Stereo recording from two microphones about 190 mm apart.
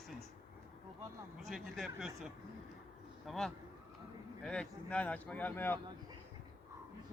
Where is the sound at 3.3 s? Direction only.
Centre (ahead or behind).